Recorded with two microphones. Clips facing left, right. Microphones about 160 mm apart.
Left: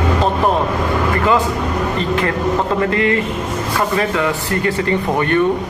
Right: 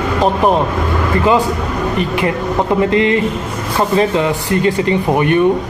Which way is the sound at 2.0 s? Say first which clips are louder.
Right 1 dB; 15° right (ahead or behind).